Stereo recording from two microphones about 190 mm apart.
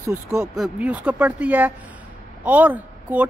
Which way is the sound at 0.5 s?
5° right (ahead or behind).